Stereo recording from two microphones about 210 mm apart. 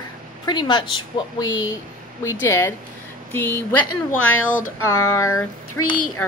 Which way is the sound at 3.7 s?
90° left.